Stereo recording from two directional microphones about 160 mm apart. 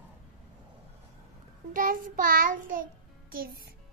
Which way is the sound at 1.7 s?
60° right (ahead or behind).